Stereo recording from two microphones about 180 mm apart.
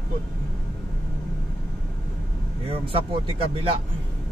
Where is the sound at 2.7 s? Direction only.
30° right (ahead or behind).